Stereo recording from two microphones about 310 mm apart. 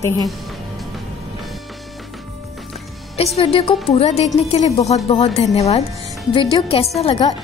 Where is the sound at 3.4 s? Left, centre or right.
Centre.